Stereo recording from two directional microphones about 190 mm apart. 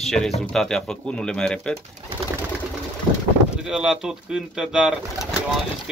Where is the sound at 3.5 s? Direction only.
5° right (ahead or behind).